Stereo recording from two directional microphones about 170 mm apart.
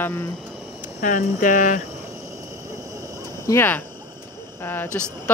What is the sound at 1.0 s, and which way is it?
Speech, 50° left (ahead or behind).